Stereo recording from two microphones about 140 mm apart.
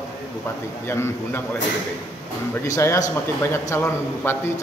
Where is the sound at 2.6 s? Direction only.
20° left (ahead or behind).